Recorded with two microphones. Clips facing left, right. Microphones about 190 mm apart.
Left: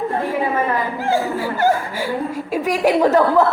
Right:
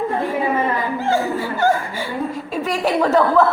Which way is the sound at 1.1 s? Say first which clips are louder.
Left 2 dB; 10° left (ahead or behind).